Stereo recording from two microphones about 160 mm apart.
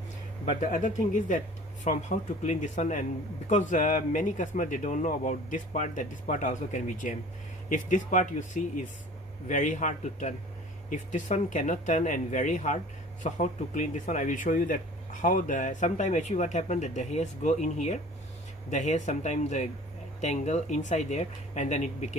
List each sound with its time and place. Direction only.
0.6 s speech: 55° left (ahead or behind)